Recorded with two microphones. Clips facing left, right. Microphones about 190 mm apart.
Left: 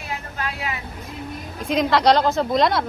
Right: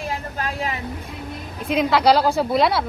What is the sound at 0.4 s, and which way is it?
Vehicle, 40° right (ahead or behind).